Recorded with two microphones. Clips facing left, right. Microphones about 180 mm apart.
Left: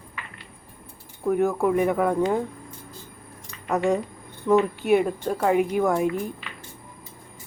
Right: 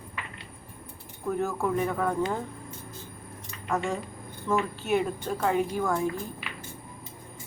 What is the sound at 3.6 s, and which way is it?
Speech, 20° left (ahead or behind).